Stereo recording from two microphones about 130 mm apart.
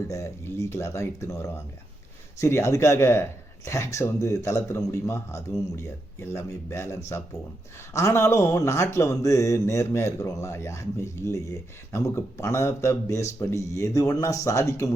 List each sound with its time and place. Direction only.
0.1 s speech: 25° left (ahead or behind)